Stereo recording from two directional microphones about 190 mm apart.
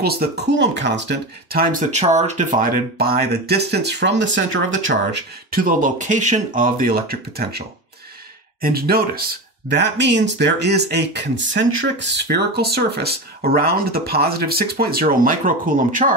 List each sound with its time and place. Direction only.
0.0 s speech: 55° right (ahead or behind); by 5.2 s 80° right
5.5 s speech: 45° right (ahead or behind)